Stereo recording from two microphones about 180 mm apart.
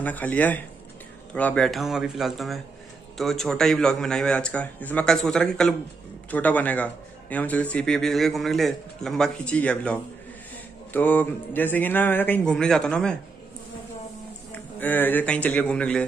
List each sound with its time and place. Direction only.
0.0 s a man's voice: 10° left (ahead or behind)
14.5 s a man's voice: 10° left (ahead or behind)